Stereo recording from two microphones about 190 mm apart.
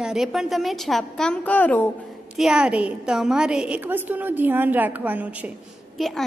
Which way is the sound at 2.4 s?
5° right (ahead or behind).